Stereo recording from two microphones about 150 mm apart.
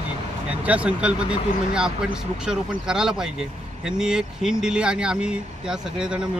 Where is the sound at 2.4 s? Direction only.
5° right (ahead or behind).